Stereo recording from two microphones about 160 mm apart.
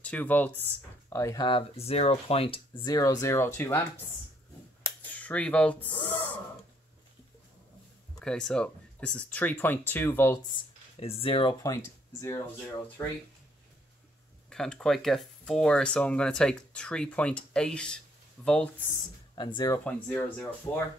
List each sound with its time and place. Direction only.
0.0 s speech: 10° left (ahead or behind)
1.1 s speech: 20° left (ahead or behind)
1.5 s speech: 40° left (ahead or behind)
2.8 s speech: 25° left (ahead or behind)
5.1 s speech: 10° left (ahead or behind)
8.2 s speech: 5° left (ahead or behind)
10.5 s speech: 35° left (ahead or behind)
11.6 s speech: 20° left (ahead or behind)
14.5 s speech: 5° left (ahead or behind)
19.3 s speech: 30° left (ahead or behind)
19.8 s speech: 10° left (ahead or behind)